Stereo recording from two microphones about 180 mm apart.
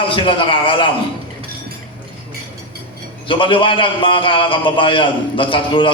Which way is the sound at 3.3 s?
30° left (ahead or behind).